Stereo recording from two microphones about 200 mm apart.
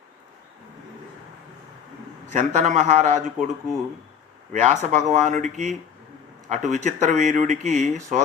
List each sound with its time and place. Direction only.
2.2 s speech: 40° right (ahead or behind)
4.5 s speech: 35° right (ahead or behind)